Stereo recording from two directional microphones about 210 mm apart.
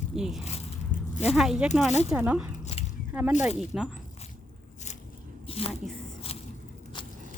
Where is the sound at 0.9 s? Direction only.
40° left (ahead or behind).